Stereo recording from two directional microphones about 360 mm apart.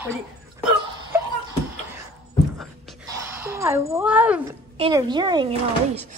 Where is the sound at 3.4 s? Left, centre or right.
Centre.